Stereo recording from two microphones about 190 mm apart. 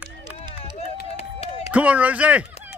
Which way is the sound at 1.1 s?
35° left (ahead or behind).